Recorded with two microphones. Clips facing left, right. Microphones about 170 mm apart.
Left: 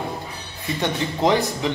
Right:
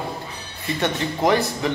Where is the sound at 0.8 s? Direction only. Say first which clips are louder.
Even; 20° left (ahead or behind).